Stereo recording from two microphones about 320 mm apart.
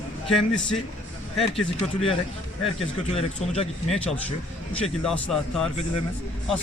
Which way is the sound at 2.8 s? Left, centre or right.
Centre.